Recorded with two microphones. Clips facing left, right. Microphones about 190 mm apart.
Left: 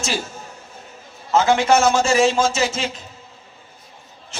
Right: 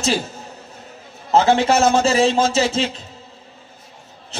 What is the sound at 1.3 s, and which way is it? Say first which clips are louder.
A man's voice: right 1 dB; 35° right (ahead or behind).